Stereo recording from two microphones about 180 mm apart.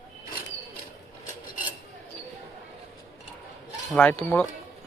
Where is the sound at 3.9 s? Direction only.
10° left (ahead or behind).